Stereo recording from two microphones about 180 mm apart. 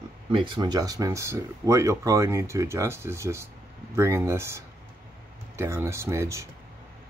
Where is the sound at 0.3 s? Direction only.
30° right (ahead or behind).